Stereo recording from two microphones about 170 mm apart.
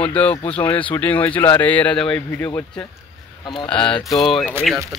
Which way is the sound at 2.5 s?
15° left (ahead or behind).